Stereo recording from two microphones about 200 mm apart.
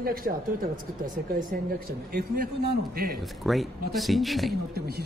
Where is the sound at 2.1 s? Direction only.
50° right (ahead or behind).